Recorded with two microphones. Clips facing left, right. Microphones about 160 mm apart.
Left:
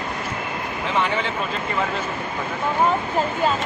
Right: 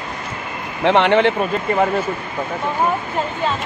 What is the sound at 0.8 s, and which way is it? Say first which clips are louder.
Speech: right 10 dB; 70° right (ahead or behind).